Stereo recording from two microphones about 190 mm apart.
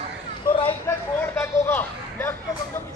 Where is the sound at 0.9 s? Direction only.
15° left (ahead or behind).